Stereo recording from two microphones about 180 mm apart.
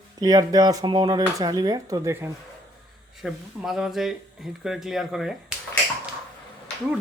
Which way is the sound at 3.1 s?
Centre (ahead or behind).